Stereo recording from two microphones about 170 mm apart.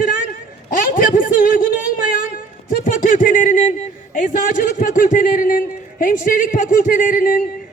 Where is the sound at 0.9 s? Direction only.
55° left (ahead or behind).